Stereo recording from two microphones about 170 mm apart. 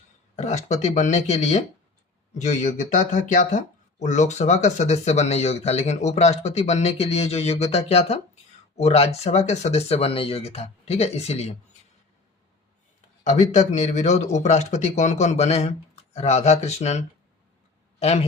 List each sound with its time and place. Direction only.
0.3 s speech: 45° left (ahead or behind)
13.2 s speech: 45° left (ahead or behind)
18.0 s speech: 35° left (ahead or behind)